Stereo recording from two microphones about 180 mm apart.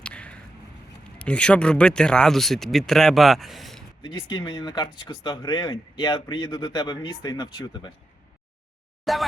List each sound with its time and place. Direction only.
0.0 s a sound: 5° left (ahead or behind)
1.2 s speech: 5° left (ahead or behind)
4.0 s speech: 25° left (ahead or behind)
9.1 s speech: centre (ahead or behind)